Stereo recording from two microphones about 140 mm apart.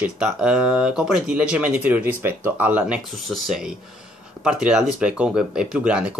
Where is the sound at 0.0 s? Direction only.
5° right (ahead or behind).